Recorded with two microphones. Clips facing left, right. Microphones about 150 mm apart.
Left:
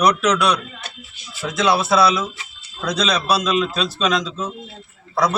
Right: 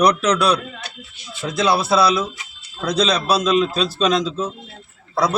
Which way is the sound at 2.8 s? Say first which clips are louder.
Right 2 dB; 30° right (ahead or behind).